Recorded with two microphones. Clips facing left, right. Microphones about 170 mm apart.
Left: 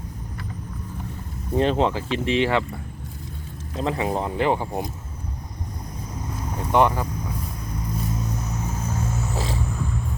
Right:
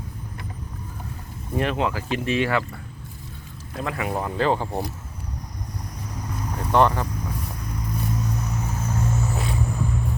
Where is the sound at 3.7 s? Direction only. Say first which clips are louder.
Left 3 dB; 25° left (ahead or behind).